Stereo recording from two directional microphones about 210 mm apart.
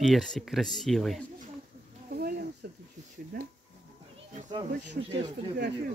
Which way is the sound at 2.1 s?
45° right (ahead or behind).